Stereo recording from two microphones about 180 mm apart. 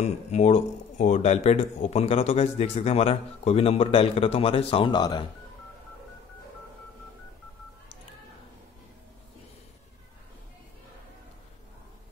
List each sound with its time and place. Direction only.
0.0 s speech: 40° left (ahead or behind)